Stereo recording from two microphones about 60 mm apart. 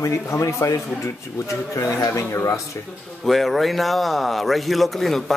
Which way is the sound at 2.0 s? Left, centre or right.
Left.